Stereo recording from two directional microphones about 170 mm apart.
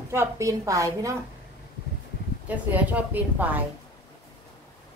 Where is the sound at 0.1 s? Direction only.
15° right (ahead or behind).